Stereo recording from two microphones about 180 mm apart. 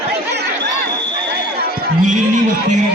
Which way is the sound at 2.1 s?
45° right (ahead or behind).